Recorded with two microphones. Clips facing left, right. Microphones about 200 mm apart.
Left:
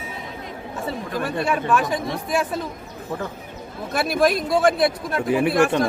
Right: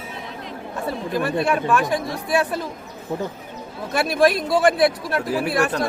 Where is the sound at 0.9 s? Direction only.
Centre (ahead or behind).